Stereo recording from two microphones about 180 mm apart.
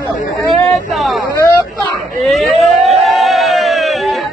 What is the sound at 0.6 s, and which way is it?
Vehicle, centre (ahead or behind).